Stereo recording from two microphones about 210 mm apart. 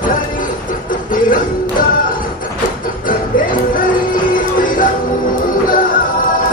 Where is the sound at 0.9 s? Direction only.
40° left (ahead or behind).